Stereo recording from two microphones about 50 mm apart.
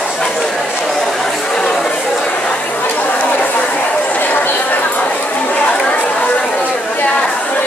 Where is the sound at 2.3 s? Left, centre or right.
Left.